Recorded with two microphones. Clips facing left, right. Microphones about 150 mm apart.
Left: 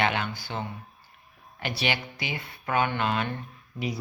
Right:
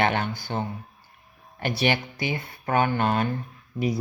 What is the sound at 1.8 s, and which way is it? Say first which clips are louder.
Speech: right 6 dB; 50° right (ahead or behind).